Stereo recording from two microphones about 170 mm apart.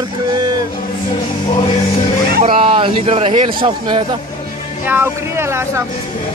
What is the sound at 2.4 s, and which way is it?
Speech, 30° right (ahead or behind).